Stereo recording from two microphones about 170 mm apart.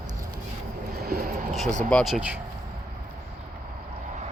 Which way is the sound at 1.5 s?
Centre (ahead or behind).